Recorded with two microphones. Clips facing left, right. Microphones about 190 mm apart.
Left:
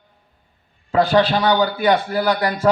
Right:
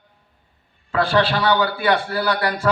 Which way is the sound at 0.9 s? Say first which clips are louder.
Left 3 dB; 20° left (ahead or behind).